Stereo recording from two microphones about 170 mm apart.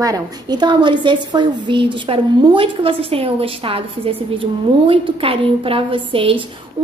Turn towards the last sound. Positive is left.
turn(degrees=-30)  # may be behind; listen again after turning